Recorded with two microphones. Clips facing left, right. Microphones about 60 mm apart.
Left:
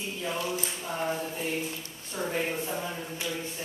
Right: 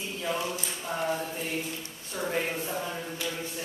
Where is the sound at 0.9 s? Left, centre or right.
Centre.